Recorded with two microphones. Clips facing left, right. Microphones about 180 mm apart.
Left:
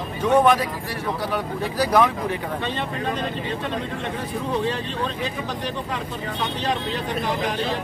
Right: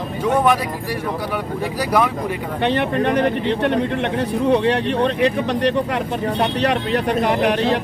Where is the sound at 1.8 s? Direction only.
10° right (ahead or behind).